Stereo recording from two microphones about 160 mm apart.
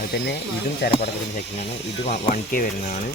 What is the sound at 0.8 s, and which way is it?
Speech, 85° left.